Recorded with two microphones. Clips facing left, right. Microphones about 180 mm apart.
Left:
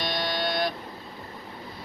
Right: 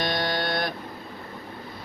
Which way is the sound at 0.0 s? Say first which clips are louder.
Right 2 dB; 55° right (ahead or behind).